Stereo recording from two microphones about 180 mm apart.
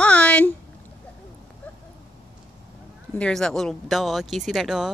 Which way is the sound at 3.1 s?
5° left (ahead or behind).